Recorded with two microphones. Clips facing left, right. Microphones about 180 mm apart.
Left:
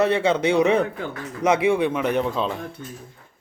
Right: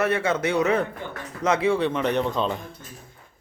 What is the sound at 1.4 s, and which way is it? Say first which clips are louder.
Speech: left 2 dB; 15° left (ahead or behind).